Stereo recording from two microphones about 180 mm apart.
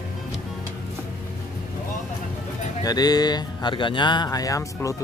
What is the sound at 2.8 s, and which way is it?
Speech, 20° left (ahead or behind).